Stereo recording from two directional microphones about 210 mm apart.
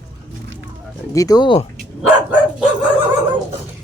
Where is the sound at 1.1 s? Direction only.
15° left (ahead or behind).